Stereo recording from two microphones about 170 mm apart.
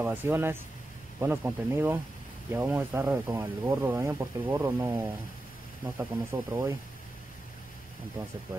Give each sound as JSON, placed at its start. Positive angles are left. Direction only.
{"t": 0.0, "sound": "speech", "side_deg": -10}